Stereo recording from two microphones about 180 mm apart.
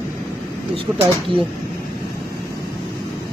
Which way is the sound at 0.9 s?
10° right (ahead or behind).